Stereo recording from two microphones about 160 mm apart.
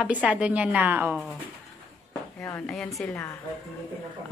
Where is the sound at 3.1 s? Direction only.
15° left (ahead or behind).